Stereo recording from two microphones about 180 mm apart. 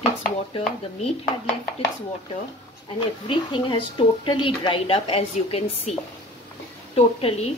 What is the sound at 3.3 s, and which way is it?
Speech, 25° left (ahead or behind).